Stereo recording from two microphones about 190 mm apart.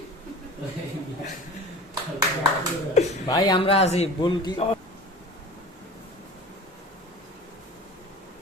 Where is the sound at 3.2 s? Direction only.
20° left (ahead or behind).